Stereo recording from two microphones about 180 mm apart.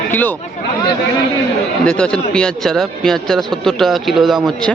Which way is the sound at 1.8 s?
5° left (ahead or behind).